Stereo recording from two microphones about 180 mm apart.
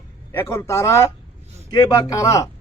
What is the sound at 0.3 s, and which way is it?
A man's voice, 15° left (ahead or behind).